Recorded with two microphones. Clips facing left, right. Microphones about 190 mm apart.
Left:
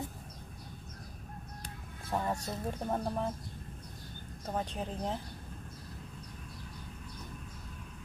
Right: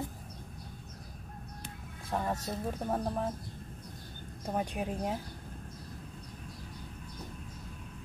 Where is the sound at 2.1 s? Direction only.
Centre (ahead or behind).